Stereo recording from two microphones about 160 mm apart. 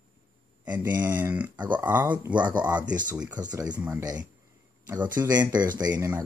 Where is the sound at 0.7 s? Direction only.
10° right (ahead or behind).